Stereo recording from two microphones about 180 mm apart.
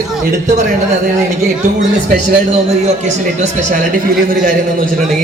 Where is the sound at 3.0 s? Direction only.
40° right (ahead or behind).